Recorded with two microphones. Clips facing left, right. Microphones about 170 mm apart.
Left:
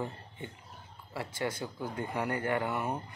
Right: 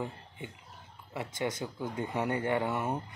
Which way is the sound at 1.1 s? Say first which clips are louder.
Right 1 dB; 20° right (ahead or behind).